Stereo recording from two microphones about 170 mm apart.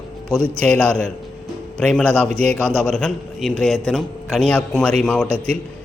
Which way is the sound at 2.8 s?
5° left (ahead or behind).